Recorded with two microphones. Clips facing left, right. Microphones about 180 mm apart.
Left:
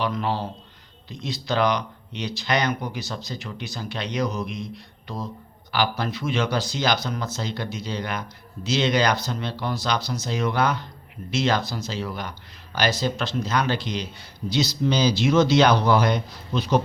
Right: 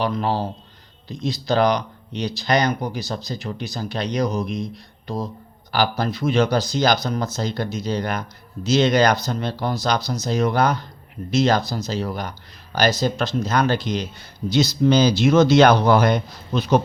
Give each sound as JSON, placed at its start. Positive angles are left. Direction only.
{"t": 0.0, "sound": "speech", "side_deg": -35}